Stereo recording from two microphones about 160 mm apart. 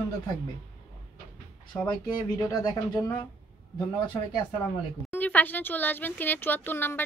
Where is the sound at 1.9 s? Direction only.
25° left (ahead or behind).